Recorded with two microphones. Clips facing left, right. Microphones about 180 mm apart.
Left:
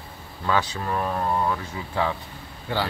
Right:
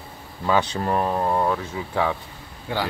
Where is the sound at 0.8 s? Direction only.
30° right (ahead or behind).